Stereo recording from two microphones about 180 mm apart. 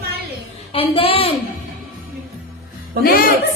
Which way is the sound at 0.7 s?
30° left (ahead or behind).